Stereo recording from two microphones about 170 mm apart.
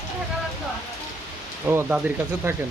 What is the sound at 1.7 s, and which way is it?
Speech, 15° right (ahead or behind).